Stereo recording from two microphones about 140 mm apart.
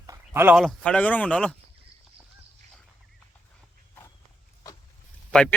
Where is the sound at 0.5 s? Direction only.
Centre (ahead or behind).